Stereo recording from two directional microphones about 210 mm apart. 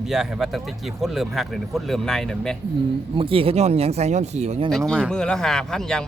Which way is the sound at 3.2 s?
25° right (ahead or behind).